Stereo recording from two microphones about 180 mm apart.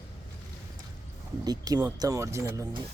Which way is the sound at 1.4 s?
20° right (ahead or behind).